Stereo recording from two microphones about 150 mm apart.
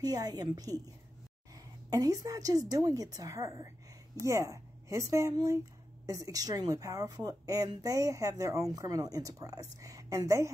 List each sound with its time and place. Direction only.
0.0 s a woman's voice: 25° right (ahead or behind)